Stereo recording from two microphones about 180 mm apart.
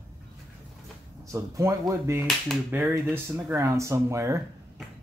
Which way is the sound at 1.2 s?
15° right (ahead or behind).